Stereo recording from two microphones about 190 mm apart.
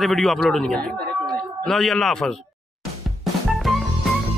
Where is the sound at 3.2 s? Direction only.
Centre (ahead or behind).